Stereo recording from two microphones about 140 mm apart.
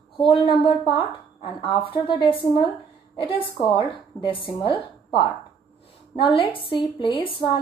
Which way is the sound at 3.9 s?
35° left (ahead or behind).